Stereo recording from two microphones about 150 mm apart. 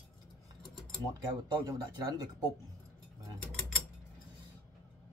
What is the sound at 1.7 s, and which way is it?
Speech, 25° right (ahead or behind).